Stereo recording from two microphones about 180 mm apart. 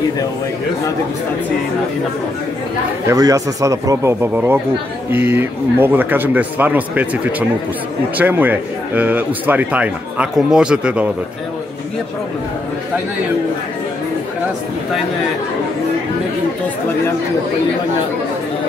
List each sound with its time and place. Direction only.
3.1 s speech: 20° right (ahead or behind)